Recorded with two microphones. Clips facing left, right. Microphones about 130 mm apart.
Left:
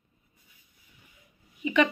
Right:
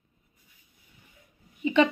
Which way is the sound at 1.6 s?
30° right (ahead or behind).